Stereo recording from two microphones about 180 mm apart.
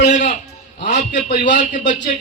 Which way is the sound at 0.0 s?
40° left (ahead or behind).